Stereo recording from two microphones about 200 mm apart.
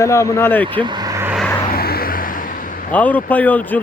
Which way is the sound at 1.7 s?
50° left (ahead or behind).